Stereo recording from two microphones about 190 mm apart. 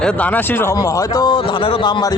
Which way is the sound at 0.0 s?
10° left (ahead or behind).